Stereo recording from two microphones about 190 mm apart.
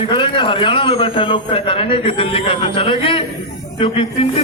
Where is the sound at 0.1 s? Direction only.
25° left (ahead or behind).